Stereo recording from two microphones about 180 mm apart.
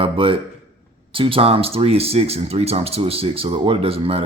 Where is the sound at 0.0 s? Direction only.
30° right (ahead or behind).